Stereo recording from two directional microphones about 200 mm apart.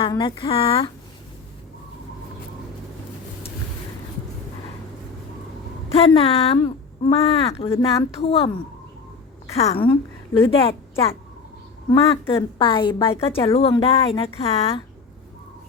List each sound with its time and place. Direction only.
0.0 s a woman's voice: 25° left (ahead or behind)
5.9 s a woman's voice: 30° left (ahead or behind)
7.7 s a woman's voice: 15° left (ahead or behind)
8.2 s a woman's voice: 30° left (ahead or behind)
9.6 s a woman's voice: 30° left (ahead or behind)
11.9 s a woman's voice: 10° left (ahead or behind)
12.4 s a woman's voice: 25° left (ahead or behind)